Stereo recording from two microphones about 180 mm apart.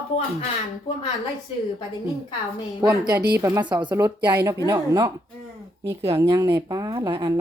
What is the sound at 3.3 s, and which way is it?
Speech, 15° right (ahead or behind).